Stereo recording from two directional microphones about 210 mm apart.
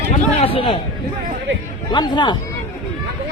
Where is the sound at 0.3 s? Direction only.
25° left (ahead or behind).